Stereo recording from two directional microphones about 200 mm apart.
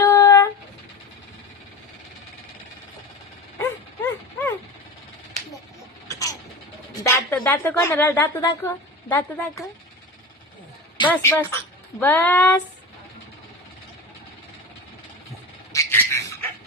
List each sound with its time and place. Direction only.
0.0 s a sound: 15° left (ahead or behind)
3.6 s mechanisms: 10° left (ahead or behind)
6.1 s vehicle: 15° left (ahead or behind)
7.0 s a woman's voice: 10° left (ahead or behind)
11.1 s speech: 10° left (ahead or behind)
15.7 s bird: 15° left (ahead or behind)